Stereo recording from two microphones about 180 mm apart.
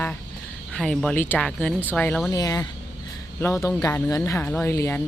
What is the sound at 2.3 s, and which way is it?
Speech, 20° left (ahead or behind).